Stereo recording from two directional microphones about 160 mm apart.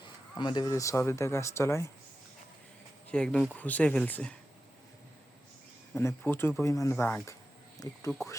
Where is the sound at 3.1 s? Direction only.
5° left (ahead or behind).